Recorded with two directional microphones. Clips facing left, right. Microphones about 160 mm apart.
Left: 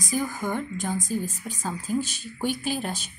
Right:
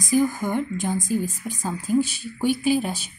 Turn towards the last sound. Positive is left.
turn(degrees=-10)  # may be behind; listen again after turning